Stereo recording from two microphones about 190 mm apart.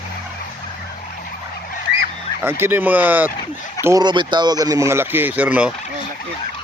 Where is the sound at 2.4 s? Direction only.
10° right (ahead or behind).